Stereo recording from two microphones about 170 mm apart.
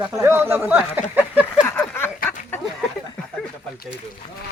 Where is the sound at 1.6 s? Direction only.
15° left (ahead or behind).